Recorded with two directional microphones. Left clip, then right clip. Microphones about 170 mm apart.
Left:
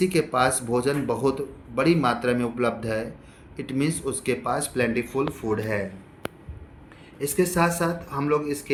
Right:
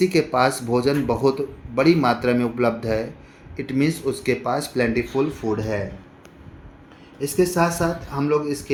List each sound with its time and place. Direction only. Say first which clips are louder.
0.0 s a man's voice: right 3 dB; 35° right (ahead or behind)
7.3 s a man's voice: right 3 dB; 40° right (ahead or behind)